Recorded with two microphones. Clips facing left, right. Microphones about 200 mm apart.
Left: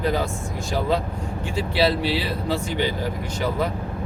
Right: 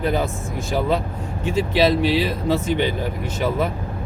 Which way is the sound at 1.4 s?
20° right (ahead or behind).